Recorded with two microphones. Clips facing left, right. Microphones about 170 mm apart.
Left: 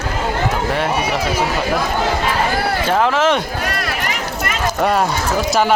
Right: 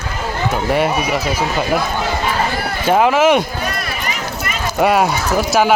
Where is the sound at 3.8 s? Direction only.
85° left.